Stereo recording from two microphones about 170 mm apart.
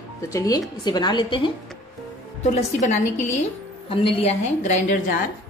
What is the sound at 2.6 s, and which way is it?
A woman's voice, 40° left (ahead or behind).